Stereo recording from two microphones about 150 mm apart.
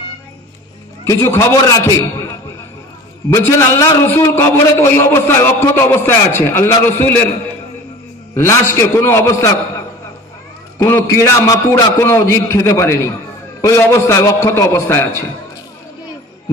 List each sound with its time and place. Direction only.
1.0 s a man's voice: 20° left (ahead or behind)
8.4 s a man's voice: 20° left (ahead or behind)